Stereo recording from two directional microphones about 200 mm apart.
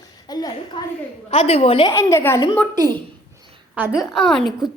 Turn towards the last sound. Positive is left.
turn(degrees=0)  # may be behind; listen again after turning